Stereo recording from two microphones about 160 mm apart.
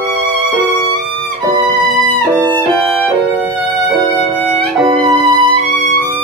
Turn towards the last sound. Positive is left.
turn(degrees=-30)  # may be behind; listen again after turning